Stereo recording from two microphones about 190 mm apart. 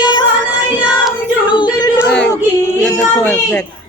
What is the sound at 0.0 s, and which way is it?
Music, 20° left (ahead or behind).